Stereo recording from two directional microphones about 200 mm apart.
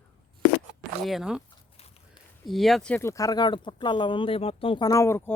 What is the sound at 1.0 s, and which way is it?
Speech, centre (ahead or behind).